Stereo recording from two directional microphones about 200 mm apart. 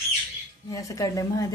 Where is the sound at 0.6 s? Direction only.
15° left (ahead or behind).